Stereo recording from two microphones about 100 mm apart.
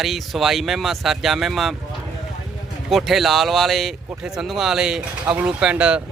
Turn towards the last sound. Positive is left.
turn(degrees=-10)  # may be behind; listen again after turning